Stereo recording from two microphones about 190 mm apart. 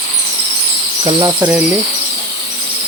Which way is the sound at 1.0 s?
20° right (ahead or behind).